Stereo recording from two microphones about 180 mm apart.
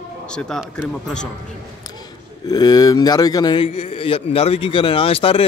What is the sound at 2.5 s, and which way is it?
A man's voice, 20° left (ahead or behind).